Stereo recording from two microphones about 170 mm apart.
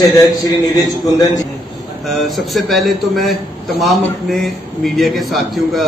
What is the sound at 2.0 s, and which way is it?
A man's voice, centre (ahead or behind).